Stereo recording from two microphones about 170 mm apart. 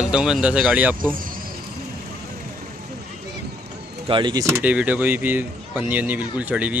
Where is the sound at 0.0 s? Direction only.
5° right (ahead or behind).